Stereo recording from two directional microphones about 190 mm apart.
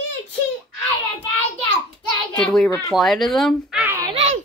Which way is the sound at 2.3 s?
5° left (ahead or behind).